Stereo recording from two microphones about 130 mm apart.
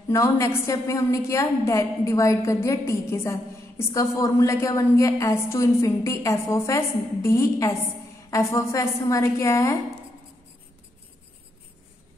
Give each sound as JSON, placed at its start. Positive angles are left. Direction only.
{"t": 0.1, "sound": "a woman's voice", "side_deg": 25}